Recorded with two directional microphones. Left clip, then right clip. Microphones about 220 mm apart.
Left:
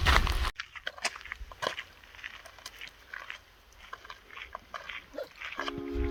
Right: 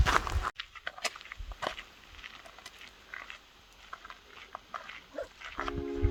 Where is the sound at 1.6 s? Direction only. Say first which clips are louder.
Left 2 dB; 40° left (ahead or behind).